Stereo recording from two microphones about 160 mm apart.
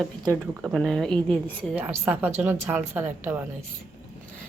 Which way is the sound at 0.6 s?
Centre (ahead or behind).